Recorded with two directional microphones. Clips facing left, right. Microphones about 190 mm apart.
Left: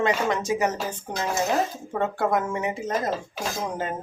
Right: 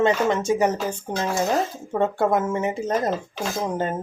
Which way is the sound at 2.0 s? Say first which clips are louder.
Right 3 dB; 25° right (ahead or behind).